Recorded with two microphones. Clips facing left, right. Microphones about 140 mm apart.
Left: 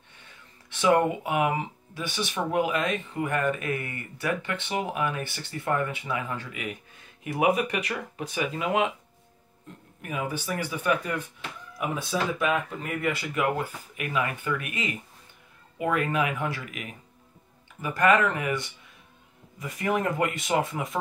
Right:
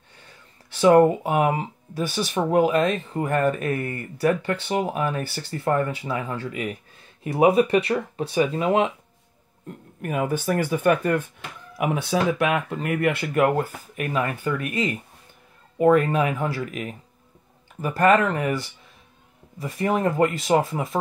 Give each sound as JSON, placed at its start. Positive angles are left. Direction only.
{"t": 0.7, "sound": "speech", "side_deg": -35}
{"t": 10.0, "sound": "speech", "side_deg": -50}
{"t": 11.8, "sound": "speech", "side_deg": -75}
{"t": 13.9, "sound": "speech", "side_deg": -40}